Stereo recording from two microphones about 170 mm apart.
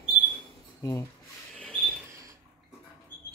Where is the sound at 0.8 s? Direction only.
20° left (ahead or behind).